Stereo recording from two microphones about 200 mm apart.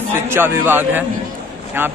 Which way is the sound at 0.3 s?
10° right (ahead or behind).